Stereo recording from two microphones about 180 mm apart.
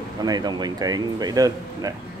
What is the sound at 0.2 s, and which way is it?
Speech, 20° right (ahead or behind).